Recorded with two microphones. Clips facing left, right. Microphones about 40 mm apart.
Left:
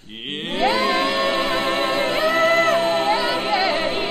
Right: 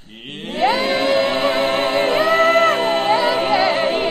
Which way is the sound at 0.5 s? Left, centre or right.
Centre.